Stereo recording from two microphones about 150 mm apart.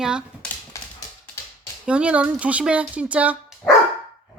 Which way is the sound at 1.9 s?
10° right (ahead or behind).